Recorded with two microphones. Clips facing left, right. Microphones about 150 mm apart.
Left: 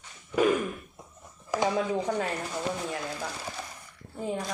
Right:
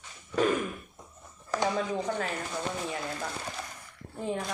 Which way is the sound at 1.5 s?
15° left (ahead or behind).